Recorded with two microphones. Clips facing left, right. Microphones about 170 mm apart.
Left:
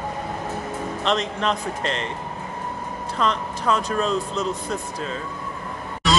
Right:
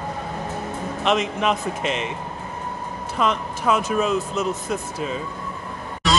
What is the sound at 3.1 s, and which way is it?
A man's voice, 15° right (ahead or behind).